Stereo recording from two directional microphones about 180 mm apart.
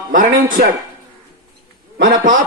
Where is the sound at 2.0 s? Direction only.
45° right (ahead or behind).